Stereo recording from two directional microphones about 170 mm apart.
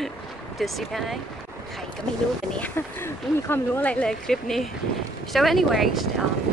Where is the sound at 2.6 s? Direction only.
15° left (ahead or behind).